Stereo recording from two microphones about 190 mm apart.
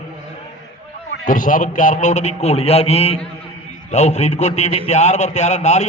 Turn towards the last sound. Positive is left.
turn(degrees=35)  # may be behind; listen again after turning